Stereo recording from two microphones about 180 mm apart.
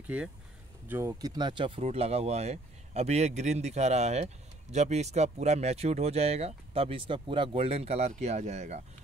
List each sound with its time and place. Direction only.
0.0 s speech: 5° right (ahead or behind); by 8.8 s 40° right (ahead or behind)